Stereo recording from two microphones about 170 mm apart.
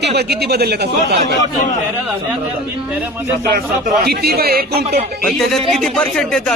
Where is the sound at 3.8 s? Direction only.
65° right (ahead or behind).